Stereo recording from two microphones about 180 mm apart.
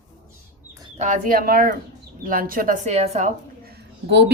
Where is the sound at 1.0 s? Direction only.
50° right (ahead or behind).